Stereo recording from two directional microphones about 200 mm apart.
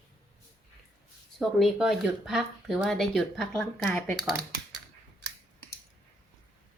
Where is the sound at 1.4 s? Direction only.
Centre (ahead or behind).